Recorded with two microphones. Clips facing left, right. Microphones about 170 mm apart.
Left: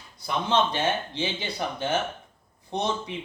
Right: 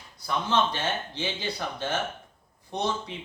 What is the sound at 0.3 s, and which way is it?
Speech, 20° left (ahead or behind).